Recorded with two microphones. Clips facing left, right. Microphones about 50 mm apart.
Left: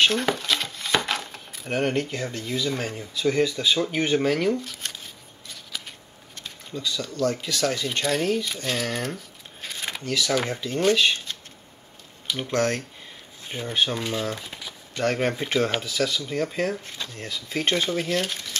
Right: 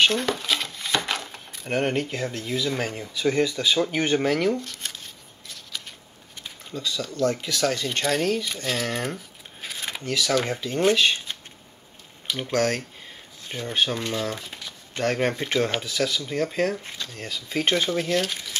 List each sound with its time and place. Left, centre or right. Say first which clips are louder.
0.0 s speech: even; centre
3.4 s shuffling cards: right 1 dB; centre
7.2 s speech: right 1 dB; right
7.6 s speech: right 1 dB; centre
11.3 s a sound: right 1 dB; right
12.3 s speech: even; centre
18.3 s crumpling: even; centre